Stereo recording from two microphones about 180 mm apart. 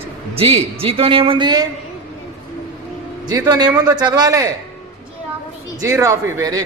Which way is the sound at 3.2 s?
20° right (ahead or behind).